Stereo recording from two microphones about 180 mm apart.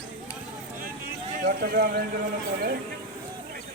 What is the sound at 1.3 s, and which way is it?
Speech, 50° right (ahead or behind).